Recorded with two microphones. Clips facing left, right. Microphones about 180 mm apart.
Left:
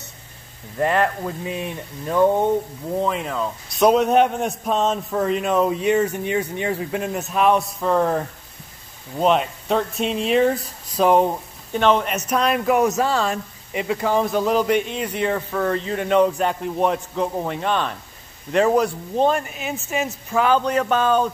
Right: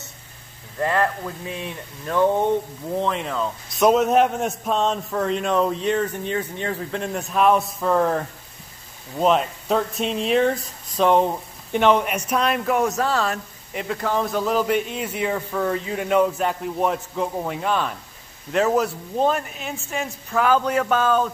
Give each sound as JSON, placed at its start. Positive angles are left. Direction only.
{"t": 0.7, "sound": "a man's voice", "side_deg": 25}
{"t": 11.7, "sound": "a man's voice", "side_deg": -15}